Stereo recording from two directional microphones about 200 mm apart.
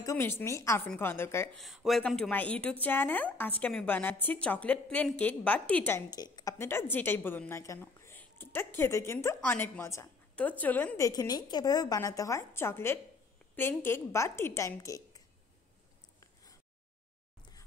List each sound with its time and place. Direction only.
0.0 s speech: 15° left (ahead or behind)
1.6 s speech: centre (ahead or behind); by 15.2 s 20° left (ahead or behind)